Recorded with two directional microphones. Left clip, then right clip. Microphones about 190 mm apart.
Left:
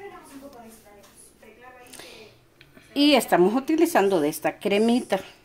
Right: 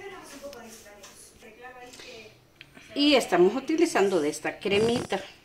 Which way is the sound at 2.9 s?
70° left (ahead or behind).